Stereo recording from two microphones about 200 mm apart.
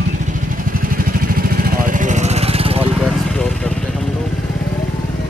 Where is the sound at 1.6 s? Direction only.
45° right (ahead or behind).